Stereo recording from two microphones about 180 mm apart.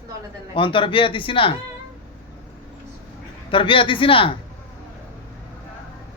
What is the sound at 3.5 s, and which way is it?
Speech, 30° left (ahead or behind).